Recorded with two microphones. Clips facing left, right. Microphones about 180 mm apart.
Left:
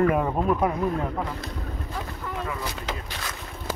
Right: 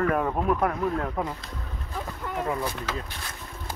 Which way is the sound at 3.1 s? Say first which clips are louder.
Left 4 dB; 90° left.